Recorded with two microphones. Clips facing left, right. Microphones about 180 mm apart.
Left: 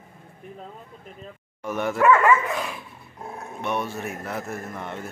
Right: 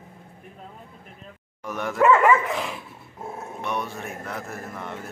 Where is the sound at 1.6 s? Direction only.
Centre (ahead or behind).